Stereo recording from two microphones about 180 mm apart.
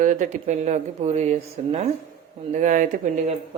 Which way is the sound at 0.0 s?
45° right (ahead or behind).